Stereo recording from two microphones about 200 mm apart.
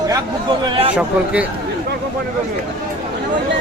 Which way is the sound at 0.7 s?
25° right (ahead or behind).